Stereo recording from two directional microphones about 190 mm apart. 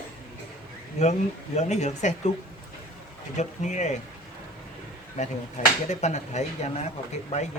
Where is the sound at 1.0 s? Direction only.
35° left (ahead or behind).